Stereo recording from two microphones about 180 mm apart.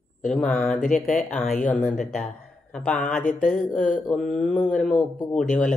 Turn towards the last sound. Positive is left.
turn(degrees=5)  # may be behind; listen again after turning